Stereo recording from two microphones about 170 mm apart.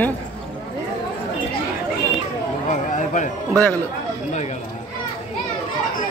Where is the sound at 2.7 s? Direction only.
45° left (ahead or behind).